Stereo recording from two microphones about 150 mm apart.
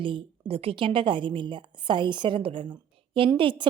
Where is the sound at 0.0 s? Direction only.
35° right (ahead or behind).